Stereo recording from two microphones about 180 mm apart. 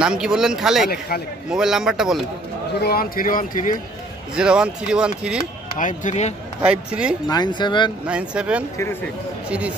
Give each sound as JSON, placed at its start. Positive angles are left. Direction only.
{"t": 0.0, "sound": "speech", "side_deg": -5}
{"t": 2.8, "sound": "speech", "side_deg": 55}
{"t": 4.4, "sound": "speech", "side_deg": -5}
{"t": 5.8, "sound": "speech", "side_deg": 45}
{"t": 6.6, "sound": "speech", "side_deg": -5}
{"t": 7.2, "sound": "speech", "side_deg": 25}
{"t": 8.1, "sound": "speech", "side_deg": -5}